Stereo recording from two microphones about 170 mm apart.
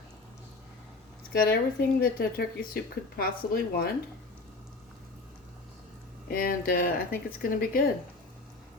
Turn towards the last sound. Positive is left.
turn(degrees=60)  # may be behind; listen again after turning